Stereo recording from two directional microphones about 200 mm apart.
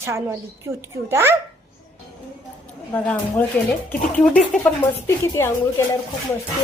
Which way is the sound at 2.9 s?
10° left (ahead or behind).